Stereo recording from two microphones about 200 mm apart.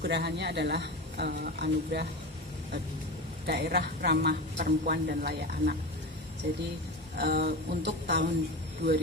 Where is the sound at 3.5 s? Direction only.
55° right (ahead or behind).